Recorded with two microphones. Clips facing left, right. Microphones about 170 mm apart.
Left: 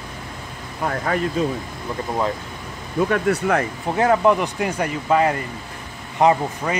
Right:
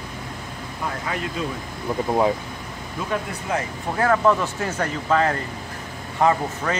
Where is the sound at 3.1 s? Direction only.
65° left (ahead or behind).